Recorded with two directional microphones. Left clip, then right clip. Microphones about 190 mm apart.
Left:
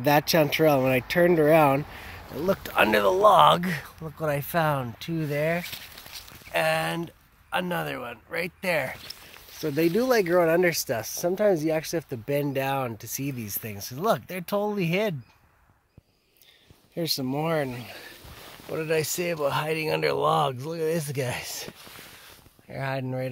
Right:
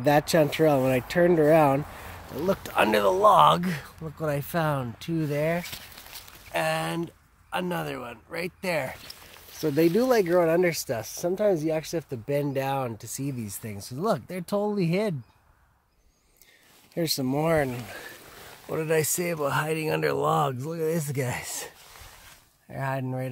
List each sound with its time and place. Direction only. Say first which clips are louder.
0.0 s speech: even; 5° right (ahead or behind)
6.5 s speech: left 2 dB; 5° left (ahead or behind)
9.6 s speech: right 2 dB; 25° right (ahead or behind)
10.3 s speech: left 1 dB; centre (ahead or behind)
16.9 s speech: right 1 dB; 10° right (ahead or behind)
22.7 s speech: even; 5° left (ahead or behind)